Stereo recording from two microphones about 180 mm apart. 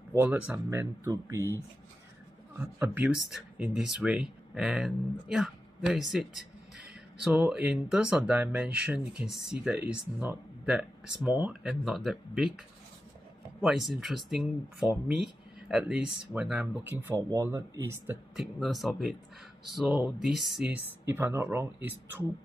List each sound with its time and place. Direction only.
0.1 s speech: 10° right (ahead or behind)
7.2 s speech: 5° right (ahead or behind)
13.6 s speech: centre (ahead or behind)
18.6 s speech: centre (ahead or behind)
21.1 s speech: 15° right (ahead or behind)